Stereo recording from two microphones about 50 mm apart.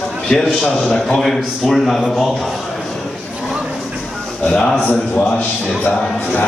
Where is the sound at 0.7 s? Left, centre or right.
Centre.